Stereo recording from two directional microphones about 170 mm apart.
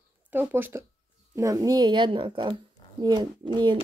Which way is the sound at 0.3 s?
10° right (ahead or behind).